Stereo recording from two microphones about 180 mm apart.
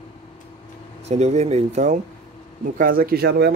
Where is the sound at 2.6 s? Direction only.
50° right (ahead or behind).